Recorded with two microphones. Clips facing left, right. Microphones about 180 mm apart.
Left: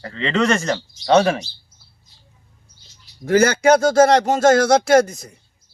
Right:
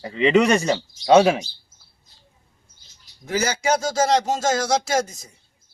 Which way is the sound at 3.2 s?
55° left (ahead or behind).